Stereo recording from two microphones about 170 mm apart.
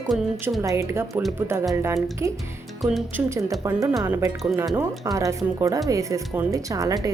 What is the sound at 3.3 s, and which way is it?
Speech, 15° right (ahead or behind).